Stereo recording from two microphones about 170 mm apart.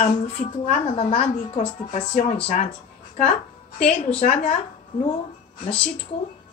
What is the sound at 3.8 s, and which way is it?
Speech, 40° left (ahead or behind).